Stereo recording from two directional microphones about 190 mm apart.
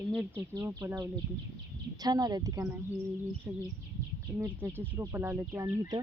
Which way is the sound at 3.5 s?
5° right (ahead or behind).